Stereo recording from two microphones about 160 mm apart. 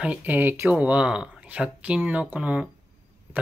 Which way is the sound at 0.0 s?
10° right (ahead or behind).